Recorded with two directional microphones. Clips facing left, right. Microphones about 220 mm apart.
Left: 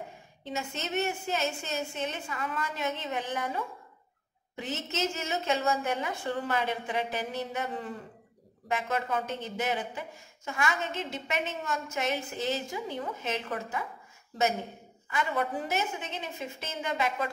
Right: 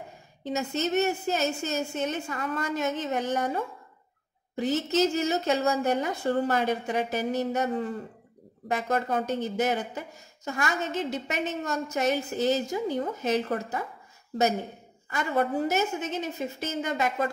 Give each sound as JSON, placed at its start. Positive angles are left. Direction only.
{"t": 0.4, "sound": "a woman's voice", "side_deg": -40}
{"t": 15.0, "sound": "speech", "side_deg": -40}